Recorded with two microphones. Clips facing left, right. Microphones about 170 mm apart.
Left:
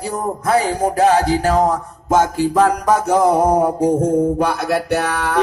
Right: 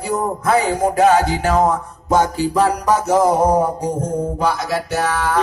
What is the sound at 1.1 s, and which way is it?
Music, 35° left (ahead or behind).